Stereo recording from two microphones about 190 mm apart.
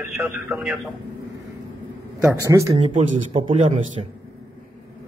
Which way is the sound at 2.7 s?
35° right (ahead or behind).